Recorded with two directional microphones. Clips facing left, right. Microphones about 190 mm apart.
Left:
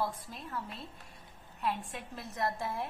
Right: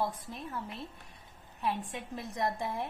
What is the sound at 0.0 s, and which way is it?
A woman's voice, 20° right (ahead or behind).